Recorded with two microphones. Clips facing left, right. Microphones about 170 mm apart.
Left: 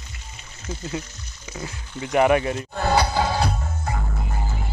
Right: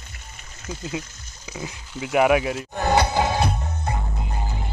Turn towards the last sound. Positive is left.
turn(degrees=-20)  # may be behind; listen again after turning